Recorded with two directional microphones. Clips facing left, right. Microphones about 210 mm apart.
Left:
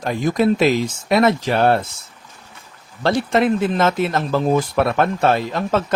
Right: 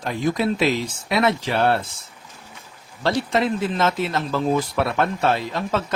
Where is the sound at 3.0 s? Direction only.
55° left (ahead or behind).